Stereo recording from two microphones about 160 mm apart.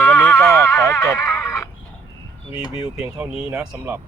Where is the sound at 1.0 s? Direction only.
20° left (ahead or behind).